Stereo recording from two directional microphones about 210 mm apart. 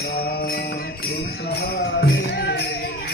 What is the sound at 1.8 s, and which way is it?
Music, 65° left (ahead or behind).